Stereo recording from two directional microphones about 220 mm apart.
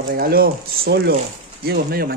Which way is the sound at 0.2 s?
40° right (ahead or behind).